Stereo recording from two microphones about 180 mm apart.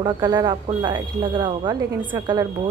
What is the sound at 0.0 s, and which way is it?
A woman's voice, 25° right (ahead or behind).